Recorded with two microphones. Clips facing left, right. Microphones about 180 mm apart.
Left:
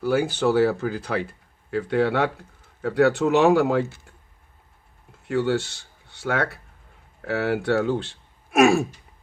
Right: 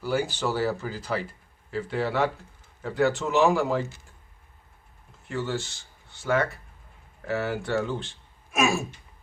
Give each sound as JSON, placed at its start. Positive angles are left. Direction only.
{"t": 0.0, "sound": "speech", "side_deg": 60}
{"t": 5.3, "sound": "speech", "side_deg": 65}